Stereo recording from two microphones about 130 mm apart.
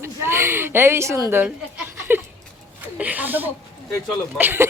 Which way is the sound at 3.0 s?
10° right (ahead or behind).